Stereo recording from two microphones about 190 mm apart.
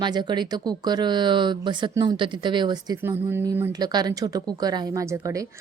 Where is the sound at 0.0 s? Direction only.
20° right (ahead or behind).